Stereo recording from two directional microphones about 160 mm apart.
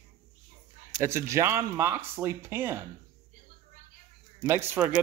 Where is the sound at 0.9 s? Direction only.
15° right (ahead or behind).